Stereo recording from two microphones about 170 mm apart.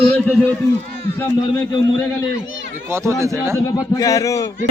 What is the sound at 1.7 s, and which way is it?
Speech, 20° left (ahead or behind).